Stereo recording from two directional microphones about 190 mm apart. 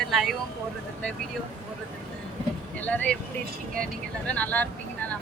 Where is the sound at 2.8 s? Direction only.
10° left (ahead or behind).